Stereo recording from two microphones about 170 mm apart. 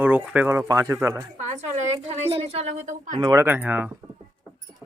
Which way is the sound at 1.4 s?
45° right (ahead or behind).